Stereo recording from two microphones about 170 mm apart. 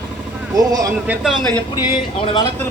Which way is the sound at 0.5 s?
20° right (ahead or behind).